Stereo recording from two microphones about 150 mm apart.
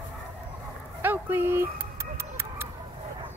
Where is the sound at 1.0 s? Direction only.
15° right (ahead or behind).